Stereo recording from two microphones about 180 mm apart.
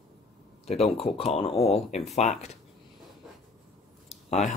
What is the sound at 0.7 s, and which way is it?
Speech, 35° left (ahead or behind).